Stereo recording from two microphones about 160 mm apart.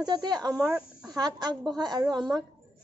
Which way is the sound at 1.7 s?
25° right (ahead or behind).